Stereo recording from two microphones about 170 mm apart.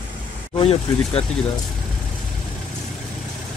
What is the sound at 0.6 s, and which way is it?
Speech, 35° left (ahead or behind).